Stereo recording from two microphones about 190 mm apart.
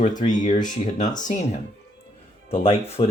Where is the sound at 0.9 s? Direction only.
40° left (ahead or behind).